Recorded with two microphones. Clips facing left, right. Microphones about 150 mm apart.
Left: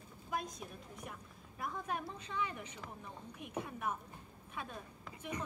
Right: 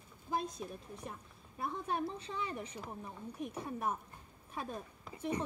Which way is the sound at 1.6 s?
30° right (ahead or behind).